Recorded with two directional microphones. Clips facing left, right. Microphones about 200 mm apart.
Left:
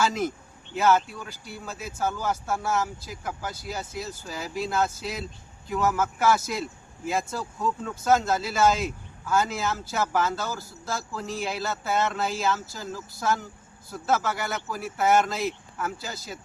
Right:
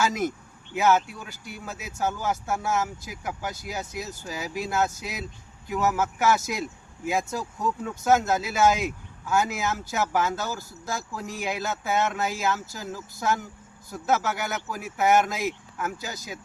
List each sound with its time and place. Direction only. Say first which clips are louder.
0.7 s speech: even; 15° right (ahead or behind)
5.6 s speech: even; 5° right (ahead or behind)
6.0 s speech: even; 15° right (ahead or behind)